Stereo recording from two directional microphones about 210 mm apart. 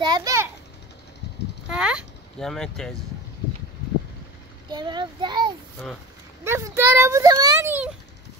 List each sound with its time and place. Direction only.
0.0 s a child's voice: 20° right (ahead or behind)
1.7 s speech: 5° right (ahead or behind)
4.6 s a child's voice: 20° right (ahead or behind)